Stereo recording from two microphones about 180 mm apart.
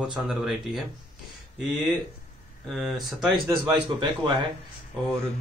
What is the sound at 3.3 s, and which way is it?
A man's voice, 25° right (ahead or behind).